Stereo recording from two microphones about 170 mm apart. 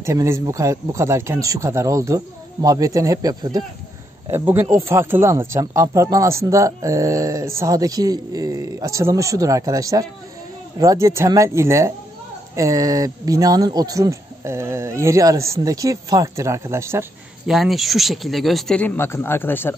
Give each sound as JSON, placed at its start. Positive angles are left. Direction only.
{"t": 0.0, "sound": "speech", "side_deg": -15}
{"t": 17.5, "sound": "speech", "side_deg": 0}